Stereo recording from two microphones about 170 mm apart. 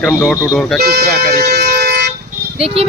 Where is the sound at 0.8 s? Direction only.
65° right (ahead or behind).